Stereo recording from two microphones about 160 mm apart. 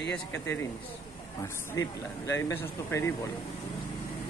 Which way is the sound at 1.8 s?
20° left (ahead or behind).